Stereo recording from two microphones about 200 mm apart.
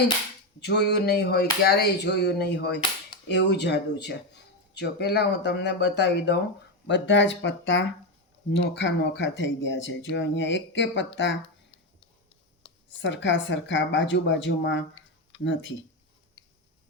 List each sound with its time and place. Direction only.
0.6 s speech: 55° left (ahead or behind)
13.0 s speech: 65° left (ahead or behind)